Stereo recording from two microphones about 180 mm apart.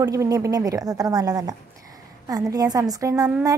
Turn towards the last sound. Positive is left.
turn(degrees=-20)  # may be behind; listen again after turning